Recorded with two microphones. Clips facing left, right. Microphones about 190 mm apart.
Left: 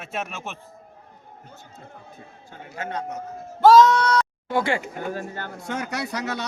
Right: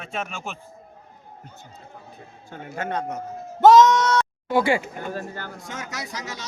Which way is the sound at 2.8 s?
55° right (ahead or behind).